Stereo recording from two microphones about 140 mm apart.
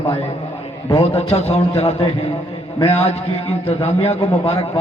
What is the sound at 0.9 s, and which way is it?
A man's voice, 50° left (ahead or behind).